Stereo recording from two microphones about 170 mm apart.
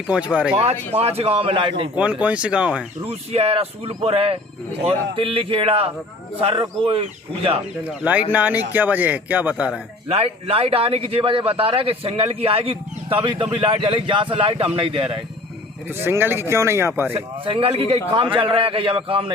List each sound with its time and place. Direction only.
0.6 s a man's voice: 35° right (ahead or behind)
2.0 s speech: 10° right (ahead or behind)
3.0 s a man's voice: 35° right (ahead or behind)
7.9 s speech: 10° right (ahead or behind)
10.1 s a man's voice: 35° right (ahead or behind)
16.0 s speech: 15° right (ahead or behind)
17.2 s a man's voice: 30° right (ahead or behind)